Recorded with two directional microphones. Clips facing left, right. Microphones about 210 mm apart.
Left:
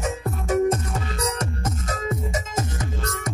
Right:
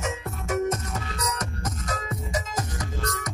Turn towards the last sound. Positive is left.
turn(degrees=25)  # may be behind; listen again after turning